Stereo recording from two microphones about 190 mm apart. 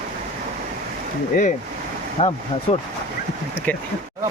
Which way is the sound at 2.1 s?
35° left (ahead or behind).